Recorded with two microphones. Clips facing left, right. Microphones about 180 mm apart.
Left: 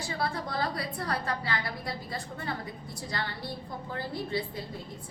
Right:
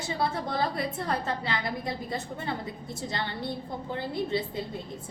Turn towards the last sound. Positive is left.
turn(degrees=-20)  # may be behind; listen again after turning